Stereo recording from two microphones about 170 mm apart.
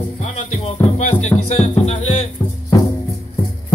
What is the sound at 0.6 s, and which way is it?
Music, 40° left (ahead or behind).